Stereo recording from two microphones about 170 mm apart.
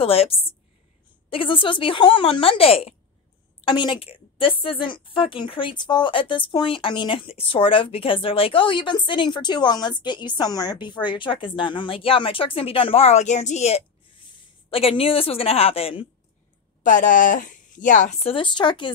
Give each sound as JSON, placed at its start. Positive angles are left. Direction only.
{"t": 0.0, "sound": "a woman's voice", "side_deg": 35}
{"t": 16.8, "sound": "speech", "side_deg": 50}